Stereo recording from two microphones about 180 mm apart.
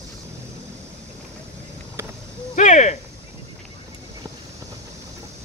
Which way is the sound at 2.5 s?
40° left (ahead or behind).